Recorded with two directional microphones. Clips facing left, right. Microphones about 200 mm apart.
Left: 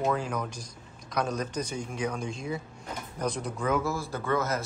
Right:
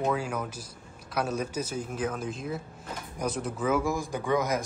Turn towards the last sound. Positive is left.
turn(degrees=-15)  # may be behind; listen again after turning